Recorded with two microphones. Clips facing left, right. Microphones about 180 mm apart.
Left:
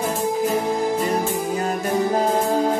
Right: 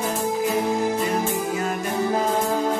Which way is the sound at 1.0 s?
35° left (ahead or behind).